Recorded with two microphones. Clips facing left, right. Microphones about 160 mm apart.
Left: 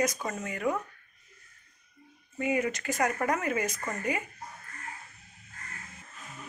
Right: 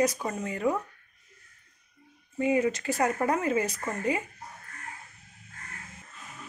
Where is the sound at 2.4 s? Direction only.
30° right (ahead or behind).